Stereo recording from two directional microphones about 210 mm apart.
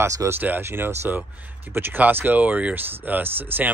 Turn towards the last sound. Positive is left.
turn(degrees=-10)  # may be behind; listen again after turning